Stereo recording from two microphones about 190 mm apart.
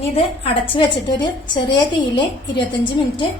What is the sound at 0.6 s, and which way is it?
A woman's voice, 30° left (ahead or behind).